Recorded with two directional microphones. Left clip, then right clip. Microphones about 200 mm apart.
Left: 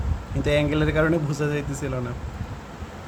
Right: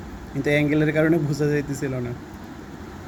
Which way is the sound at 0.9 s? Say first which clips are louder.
Right 2 dB; centre (ahead or behind).